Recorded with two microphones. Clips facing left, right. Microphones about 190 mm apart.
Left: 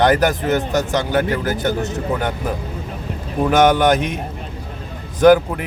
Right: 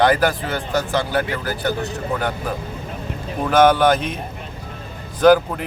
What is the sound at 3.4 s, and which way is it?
Speech, 20° left (ahead or behind).